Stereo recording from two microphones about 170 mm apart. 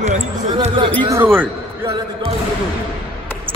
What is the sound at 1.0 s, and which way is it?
Speech, 15° right (ahead or behind).